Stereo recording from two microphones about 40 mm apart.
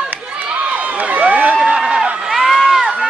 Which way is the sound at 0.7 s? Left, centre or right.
Right.